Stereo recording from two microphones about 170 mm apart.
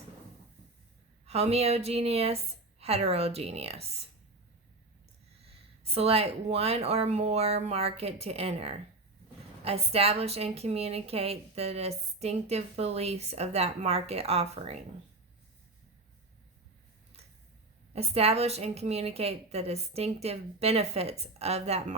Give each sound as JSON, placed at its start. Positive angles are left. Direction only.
{"t": 1.3, "sound": "a woman's voice", "side_deg": -35}
{"t": 5.8, "sound": "a woman's voice", "side_deg": -35}
{"t": 17.9, "sound": "a woman's voice", "side_deg": -35}